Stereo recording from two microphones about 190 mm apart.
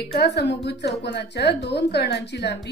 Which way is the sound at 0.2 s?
60° left (ahead or behind).